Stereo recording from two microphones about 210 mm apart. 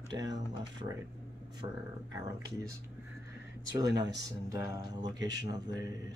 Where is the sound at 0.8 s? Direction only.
30° right (ahead or behind).